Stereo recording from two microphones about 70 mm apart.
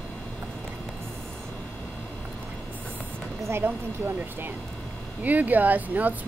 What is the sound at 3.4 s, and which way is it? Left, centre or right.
Speech, right.